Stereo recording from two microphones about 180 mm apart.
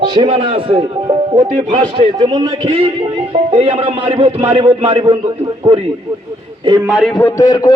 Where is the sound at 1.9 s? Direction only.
25° right (ahead or behind).